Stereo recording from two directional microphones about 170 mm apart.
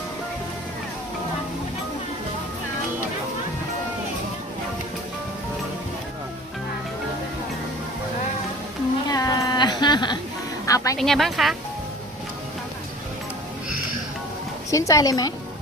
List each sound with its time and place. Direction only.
9.0 s a sound: 20° left (ahead or behind)
10.9 s speech: centre (ahead or behind)
14.7 s speech: 20° left (ahead or behind)